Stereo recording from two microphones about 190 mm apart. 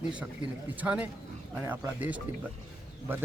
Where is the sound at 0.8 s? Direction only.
5° right (ahead or behind).